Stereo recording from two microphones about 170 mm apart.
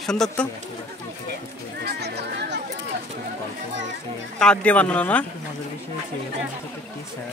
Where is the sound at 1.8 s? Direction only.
75° right (ahead or behind).